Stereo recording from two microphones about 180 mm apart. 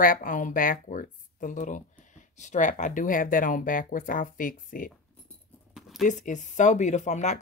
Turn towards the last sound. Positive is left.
turn(degrees=40)  # may be behind; listen again after turning